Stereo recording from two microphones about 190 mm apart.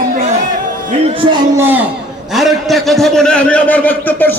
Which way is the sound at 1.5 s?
10° right (ahead or behind).